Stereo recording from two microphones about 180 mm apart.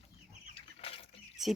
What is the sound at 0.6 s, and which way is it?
Bird flight, 30° left (ahead or behind).